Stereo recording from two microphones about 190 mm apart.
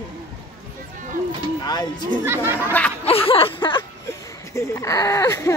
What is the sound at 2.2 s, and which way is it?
Speech, 10° right (ahead or behind).